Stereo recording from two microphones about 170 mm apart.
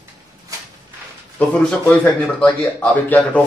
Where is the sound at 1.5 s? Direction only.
5° left (ahead or behind).